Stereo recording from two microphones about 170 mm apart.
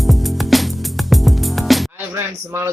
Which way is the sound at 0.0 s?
Centre (ahead or behind).